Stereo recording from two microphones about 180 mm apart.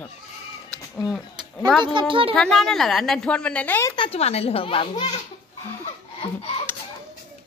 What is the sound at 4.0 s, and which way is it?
Speech, 35° left (ahead or behind).